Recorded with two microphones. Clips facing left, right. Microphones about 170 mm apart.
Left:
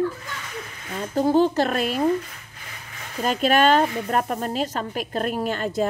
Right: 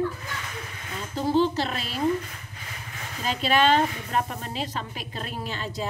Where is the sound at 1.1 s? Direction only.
50° left (ahead or behind).